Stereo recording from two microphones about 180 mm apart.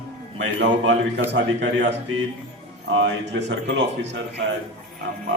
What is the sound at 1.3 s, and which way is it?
Speech, 85° right.